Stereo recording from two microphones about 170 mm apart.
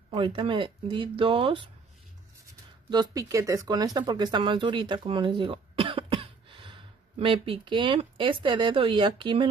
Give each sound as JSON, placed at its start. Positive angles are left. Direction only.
{"t": 0.1, "sound": "speech", "side_deg": -30}
{"t": 2.9, "sound": "speech", "side_deg": -25}